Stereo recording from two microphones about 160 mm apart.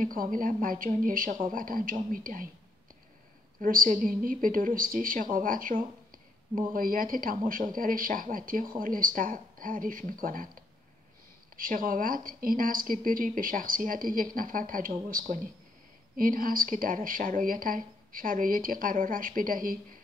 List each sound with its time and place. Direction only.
0.0 s speech: 60° right (ahead or behind)
3.6 s speech: 60° right (ahead or behind)